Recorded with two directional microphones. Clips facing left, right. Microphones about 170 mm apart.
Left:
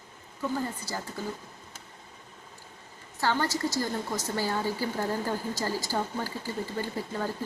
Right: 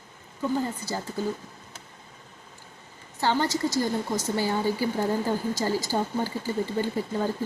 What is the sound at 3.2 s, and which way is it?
A woman's voice, 20° right (ahead or behind).